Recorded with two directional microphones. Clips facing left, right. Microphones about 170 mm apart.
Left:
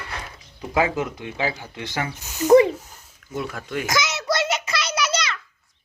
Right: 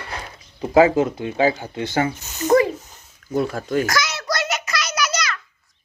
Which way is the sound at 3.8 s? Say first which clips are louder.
Even; 20° left (ahead or behind).